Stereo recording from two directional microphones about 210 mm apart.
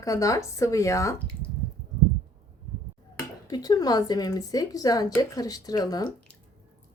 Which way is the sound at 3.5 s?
20° left (ahead or behind).